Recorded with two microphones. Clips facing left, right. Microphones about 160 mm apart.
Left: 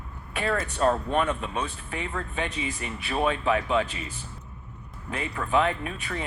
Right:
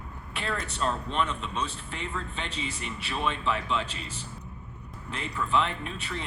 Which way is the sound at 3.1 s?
50° left (ahead or behind).